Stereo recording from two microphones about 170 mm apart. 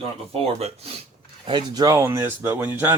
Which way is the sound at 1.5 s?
25° right (ahead or behind).